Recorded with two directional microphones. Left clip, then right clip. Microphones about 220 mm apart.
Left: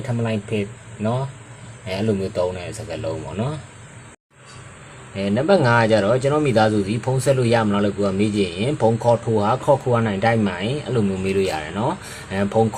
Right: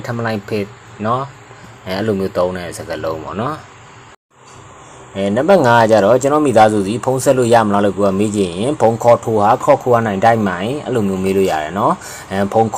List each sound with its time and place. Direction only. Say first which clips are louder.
0.2 s speech: right 4 dB; 10° right (ahead or behind)
5.1 s speech: right 6 dB; 10° right (ahead or behind)